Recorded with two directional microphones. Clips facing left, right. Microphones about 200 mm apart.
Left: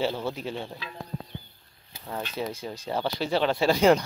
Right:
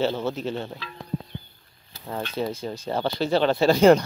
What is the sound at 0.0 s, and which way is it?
Speech, centre (ahead or behind).